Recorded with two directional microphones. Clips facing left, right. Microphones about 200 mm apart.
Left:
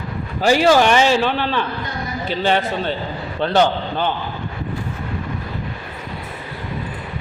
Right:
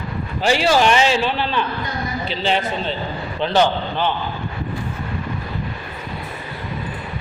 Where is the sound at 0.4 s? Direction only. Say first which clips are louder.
Left 3 dB; 45° left (ahead or behind).